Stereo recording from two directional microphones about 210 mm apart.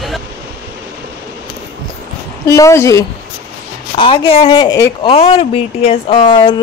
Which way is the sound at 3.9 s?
25° left (ahead or behind).